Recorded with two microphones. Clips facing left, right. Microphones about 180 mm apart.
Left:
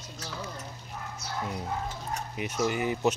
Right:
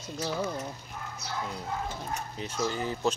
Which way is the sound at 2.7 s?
15° left (ahead or behind).